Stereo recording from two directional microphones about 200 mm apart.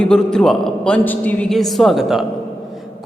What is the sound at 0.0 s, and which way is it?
A man's voice, 5° left (ahead or behind).